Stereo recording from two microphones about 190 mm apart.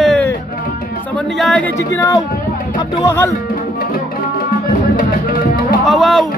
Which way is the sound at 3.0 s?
15° left (ahead or behind).